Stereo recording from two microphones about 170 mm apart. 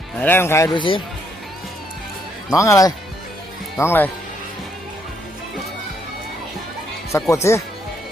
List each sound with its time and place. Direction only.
0.2 s speech: 10° left (ahead or behind)
0.7 s speech: 30° left (ahead or behind)
2.5 s speech: 20° left (ahead or behind)
7.3 s speech: 15° left (ahead or behind)